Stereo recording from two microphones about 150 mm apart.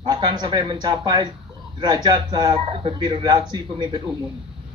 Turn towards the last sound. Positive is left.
turn(degrees=-30)  # may be behind; listen again after turning